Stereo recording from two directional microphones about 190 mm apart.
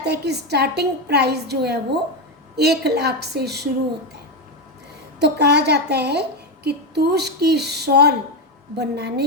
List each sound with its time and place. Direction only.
0.0 s a woman's voice: 60° right (ahead or behind)
5.2 s a woman's voice: 60° right (ahead or behind)